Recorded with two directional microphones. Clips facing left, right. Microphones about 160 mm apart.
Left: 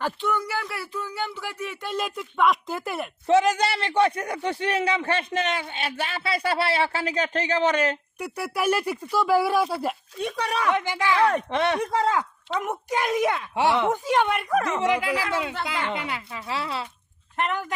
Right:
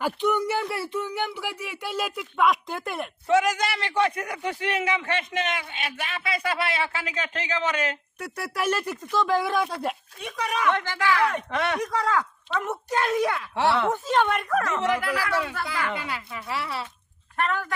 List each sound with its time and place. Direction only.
0.0 s speech: 20° right (ahead or behind); by 3.1 s centre (ahead or behind)
3.2 s a man's voice: 30° left (ahead or behind)
8.2 s speech: 10° left (ahead or behind)
10.2 s a man's voice: 35° left (ahead or behind)
10.8 s speech: 15° left (ahead or behind)